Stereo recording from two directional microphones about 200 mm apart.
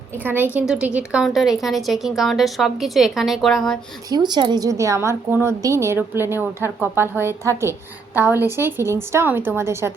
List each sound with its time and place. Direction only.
0.2 s a woman's voice: 10° right (ahead or behind)
4.1 s a woman's voice: 20° right (ahead or behind)